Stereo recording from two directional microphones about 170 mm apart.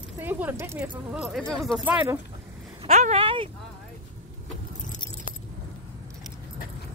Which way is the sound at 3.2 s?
30° right (ahead or behind).